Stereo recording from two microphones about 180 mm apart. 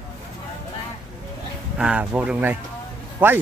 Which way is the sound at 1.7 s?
5° right (ahead or behind).